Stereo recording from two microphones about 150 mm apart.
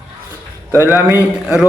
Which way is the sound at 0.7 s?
15° right (ahead or behind).